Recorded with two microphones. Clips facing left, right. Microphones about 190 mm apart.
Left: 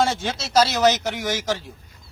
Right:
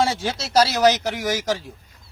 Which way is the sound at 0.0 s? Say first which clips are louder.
Even; 5° right (ahead or behind).